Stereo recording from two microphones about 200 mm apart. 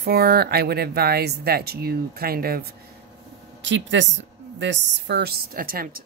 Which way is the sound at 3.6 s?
65° right (ahead or behind).